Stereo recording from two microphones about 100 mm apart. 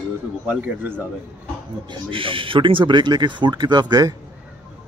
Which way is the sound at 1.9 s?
60° right (ahead or behind).